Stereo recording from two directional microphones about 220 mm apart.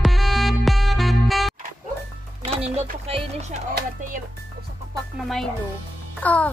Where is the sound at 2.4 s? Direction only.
25° right (ahead or behind).